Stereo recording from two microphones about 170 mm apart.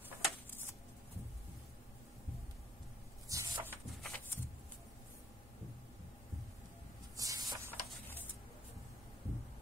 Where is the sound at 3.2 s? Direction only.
20° right (ahead or behind).